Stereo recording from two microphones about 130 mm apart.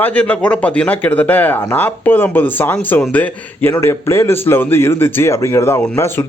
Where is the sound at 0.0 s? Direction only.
10° left (ahead or behind).